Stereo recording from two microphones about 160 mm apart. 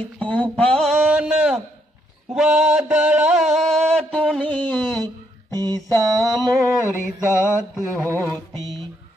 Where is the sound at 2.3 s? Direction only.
5° right (ahead or behind).